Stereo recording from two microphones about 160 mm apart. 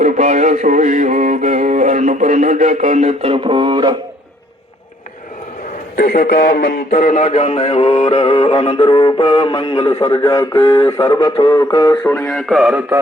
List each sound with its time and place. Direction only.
0.0 s music: 50° right (ahead or behind); by 3.9 s 30° right (ahead or behind)
6.0 s speech: 80° left; by 7.6 s 40° left (ahead or behind)
7.8 s music: 40° left (ahead or behind)
8.2 s synthetic singing: 30° left (ahead or behind)
12.1 s speech: 5° left (ahead or behind)